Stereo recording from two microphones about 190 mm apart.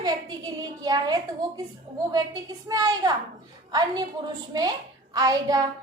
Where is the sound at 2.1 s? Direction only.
20° right (ahead or behind).